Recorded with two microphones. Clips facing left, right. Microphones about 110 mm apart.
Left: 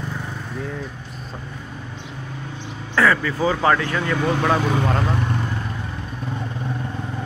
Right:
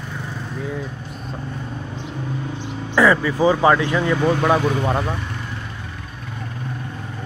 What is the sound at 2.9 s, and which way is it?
Speech, 15° right (ahead or behind).